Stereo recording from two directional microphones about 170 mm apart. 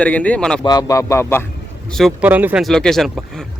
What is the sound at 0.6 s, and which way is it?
Speech, 20° left (ahead or behind).